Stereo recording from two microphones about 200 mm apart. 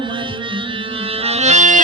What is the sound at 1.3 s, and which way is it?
Accordion, 35° right (ahead or behind).